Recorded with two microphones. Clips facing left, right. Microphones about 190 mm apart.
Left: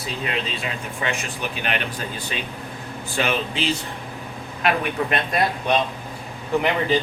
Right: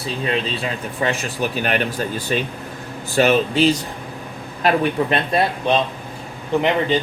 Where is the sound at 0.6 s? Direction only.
35° right (ahead or behind).